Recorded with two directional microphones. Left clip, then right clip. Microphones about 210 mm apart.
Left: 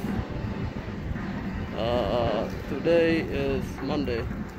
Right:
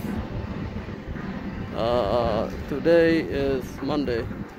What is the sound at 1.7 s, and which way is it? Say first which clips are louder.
Speech: right 4 dB; 30° right (ahead or behind).